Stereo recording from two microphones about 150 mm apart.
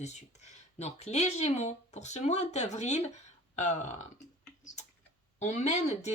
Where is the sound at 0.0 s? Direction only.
50° left (ahead or behind).